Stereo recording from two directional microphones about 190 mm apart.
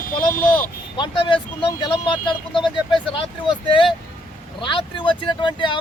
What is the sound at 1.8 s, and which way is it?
Speech, 25° left (ahead or behind).